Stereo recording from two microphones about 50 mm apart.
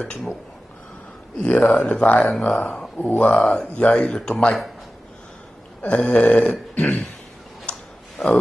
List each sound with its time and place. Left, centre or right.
1.4 s speech: left
3.0 s speech: left
4.1 s speech: centre
5.9 s speech: left
6.7 s burping: left
7.7 s a sound: left